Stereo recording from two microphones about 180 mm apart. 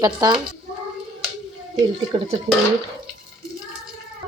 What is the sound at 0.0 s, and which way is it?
Speech, 25° right (ahead or behind).